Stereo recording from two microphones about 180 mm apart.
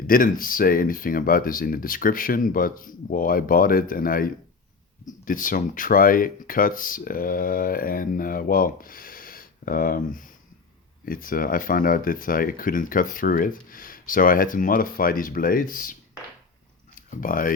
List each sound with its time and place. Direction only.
0.1 s speech: 50° left (ahead or behind)
17.1 s speech: 50° left (ahead or behind)